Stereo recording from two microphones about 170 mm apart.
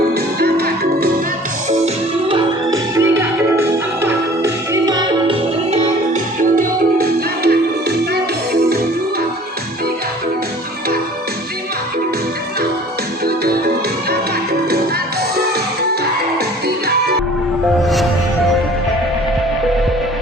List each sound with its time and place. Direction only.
0.1 s music: 65° right (ahead or behind)
1.7 s music: 35° right (ahead or behind)
2.6 s music: 20° right (ahead or behind)
6.4 s music: 60° right (ahead or behind)
13.2 s music: 65° right (ahead or behind)
16.6 s music: 70° right (ahead or behind)
17.8 s music: centre (ahead or behind)